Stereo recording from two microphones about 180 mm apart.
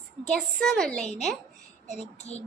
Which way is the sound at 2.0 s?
35° left (ahead or behind).